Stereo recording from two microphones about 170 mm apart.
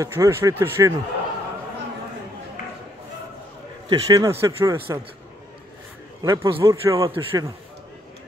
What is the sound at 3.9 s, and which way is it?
Speech, 20° right (ahead or behind).